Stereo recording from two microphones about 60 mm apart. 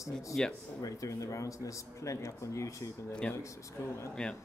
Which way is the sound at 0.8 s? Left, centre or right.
Left.